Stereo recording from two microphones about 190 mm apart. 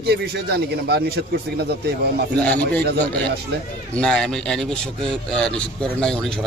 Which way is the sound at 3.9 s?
5° left (ahead or behind).